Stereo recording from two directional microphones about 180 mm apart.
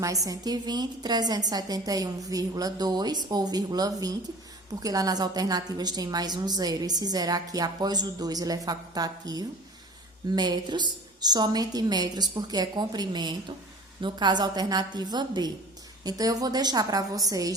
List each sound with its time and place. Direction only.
0.0 s a woman's voice: 20° right (ahead or behind)